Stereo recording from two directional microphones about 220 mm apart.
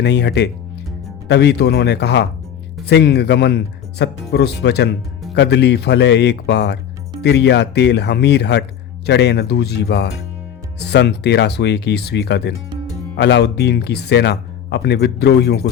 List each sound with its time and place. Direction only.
0.0 s speech: 50° left (ahead or behind)